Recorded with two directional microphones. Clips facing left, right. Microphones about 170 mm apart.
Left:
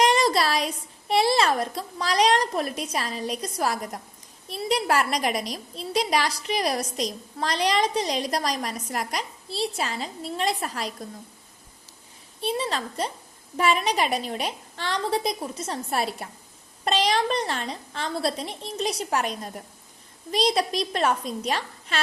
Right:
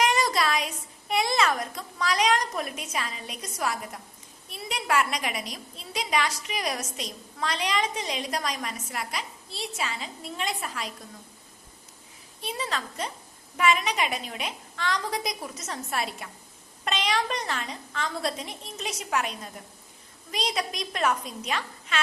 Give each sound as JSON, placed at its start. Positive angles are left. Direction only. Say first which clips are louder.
{"t": 0.0, "sound": "a woman's voice", "louder": "left 4 dB", "side_deg": 35}
{"t": 12.4, "sound": "a woman's voice", "louder": "left 5 dB", "side_deg": 30}